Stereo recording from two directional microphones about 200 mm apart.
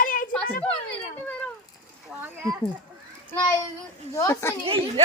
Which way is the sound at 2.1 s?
10° right (ahead or behind).